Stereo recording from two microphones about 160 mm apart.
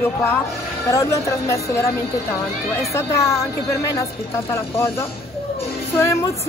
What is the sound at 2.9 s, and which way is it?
Speech, 15° left (ahead or behind).